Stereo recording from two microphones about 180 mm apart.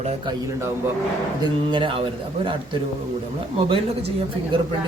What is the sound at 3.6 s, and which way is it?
Speech, 30° right (ahead or behind).